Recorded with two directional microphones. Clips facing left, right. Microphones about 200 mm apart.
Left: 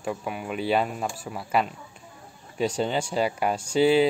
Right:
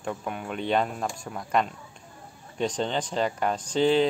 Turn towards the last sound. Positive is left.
turn(degrees=10)  # may be behind; listen again after turning